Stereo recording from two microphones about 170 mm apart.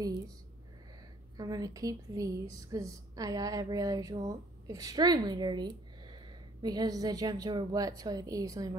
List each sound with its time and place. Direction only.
1.3 s speech: 20° right (ahead or behind)